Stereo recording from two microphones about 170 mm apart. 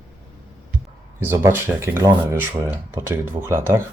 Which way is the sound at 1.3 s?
15° right (ahead or behind).